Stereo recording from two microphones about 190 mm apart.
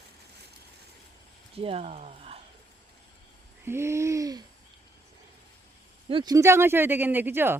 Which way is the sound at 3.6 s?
15° right (ahead or behind).